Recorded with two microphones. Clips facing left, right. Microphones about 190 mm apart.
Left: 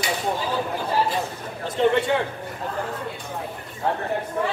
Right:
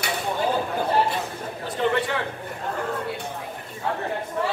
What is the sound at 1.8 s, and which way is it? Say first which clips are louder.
Speech: left 4 dB; 25° left (ahead or behind).